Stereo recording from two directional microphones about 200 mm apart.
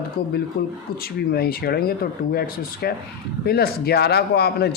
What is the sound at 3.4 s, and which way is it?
Speech, 50° left (ahead or behind).